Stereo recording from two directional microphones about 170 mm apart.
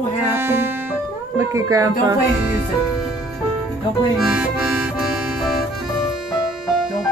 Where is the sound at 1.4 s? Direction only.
20° right (ahead or behind).